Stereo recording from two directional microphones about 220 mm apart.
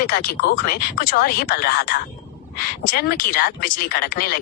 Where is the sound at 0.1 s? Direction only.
45° left (ahead or behind).